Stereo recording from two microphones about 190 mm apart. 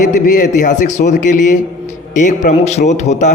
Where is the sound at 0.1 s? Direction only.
40° left (ahead or behind).